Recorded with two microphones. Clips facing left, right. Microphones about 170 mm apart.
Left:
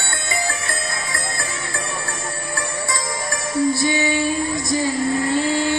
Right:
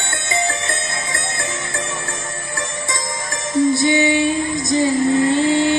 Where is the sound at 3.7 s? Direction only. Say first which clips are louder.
Right 4 dB; 20° right (ahead or behind).